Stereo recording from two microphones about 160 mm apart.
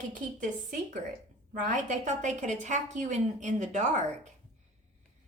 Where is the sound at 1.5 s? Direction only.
50° right (ahead or behind).